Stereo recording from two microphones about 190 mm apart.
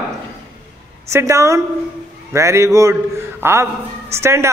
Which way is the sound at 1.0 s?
15° right (ahead or behind).